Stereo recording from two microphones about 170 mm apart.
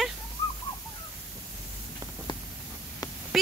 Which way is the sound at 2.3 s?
25° left (ahead or behind).